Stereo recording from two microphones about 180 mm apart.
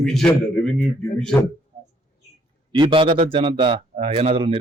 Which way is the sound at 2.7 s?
30° right (ahead or behind).